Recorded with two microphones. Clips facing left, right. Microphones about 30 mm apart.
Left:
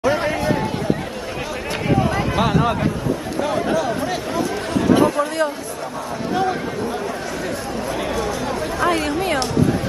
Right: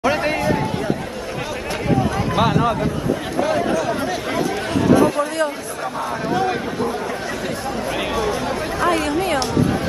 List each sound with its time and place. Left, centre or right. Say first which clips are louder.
0.1 s chatter: even; right
2.3 s speech: right 2 dB; centre
5.1 s speech: even; centre
8.5 s speech: even; centre